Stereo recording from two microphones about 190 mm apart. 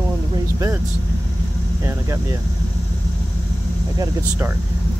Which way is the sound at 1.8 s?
15° right (ahead or behind).